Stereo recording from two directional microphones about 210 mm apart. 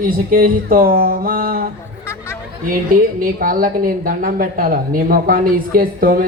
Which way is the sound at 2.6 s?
40° right (ahead or behind).